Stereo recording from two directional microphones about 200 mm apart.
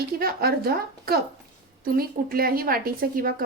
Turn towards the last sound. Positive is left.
turn(degrees=-45)  # may be behind; listen again after turning